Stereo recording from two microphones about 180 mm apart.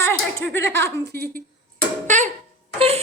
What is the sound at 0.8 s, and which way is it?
Speech, 65° right (ahead or behind).